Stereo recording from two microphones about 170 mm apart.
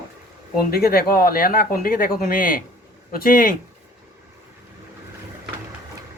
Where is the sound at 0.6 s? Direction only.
65° left (ahead or behind).